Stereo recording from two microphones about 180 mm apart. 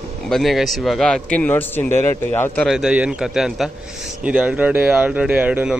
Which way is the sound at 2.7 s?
5° right (ahead or behind).